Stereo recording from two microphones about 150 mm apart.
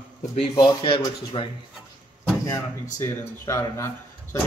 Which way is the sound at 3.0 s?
20° left (ahead or behind).